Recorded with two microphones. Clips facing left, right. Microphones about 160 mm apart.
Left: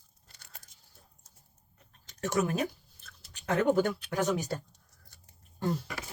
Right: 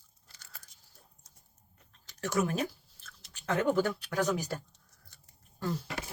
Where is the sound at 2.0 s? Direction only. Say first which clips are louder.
Left 1 dB; 20° left (ahead or behind).